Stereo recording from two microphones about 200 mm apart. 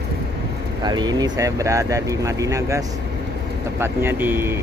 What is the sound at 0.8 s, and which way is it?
Speech, 20° right (ahead or behind).